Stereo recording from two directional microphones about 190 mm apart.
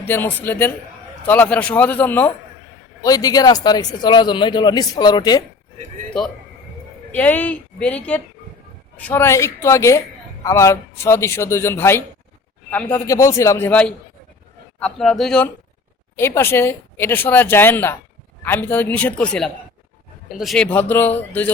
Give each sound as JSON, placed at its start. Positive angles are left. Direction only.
{"t": 0.0, "sound": "speech", "side_deg": 10}
{"t": 7.1, "sound": "speech", "side_deg": 10}